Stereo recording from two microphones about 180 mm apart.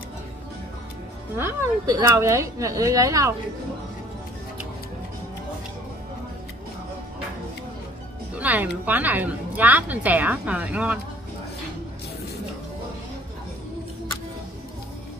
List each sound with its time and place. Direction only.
1.3 s a woman's voice: 15° right (ahead or behind)
8.4 s a woman's voice: 10° right (ahead or behind)